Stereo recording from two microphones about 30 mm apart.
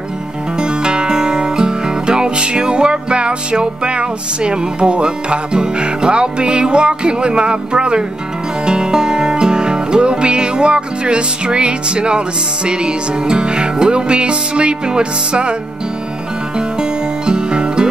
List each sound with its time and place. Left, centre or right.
0.6 s music: right
17.3 s music: right